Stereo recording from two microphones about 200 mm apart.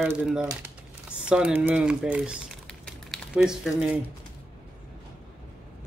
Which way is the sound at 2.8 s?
Centre (ahead or behind).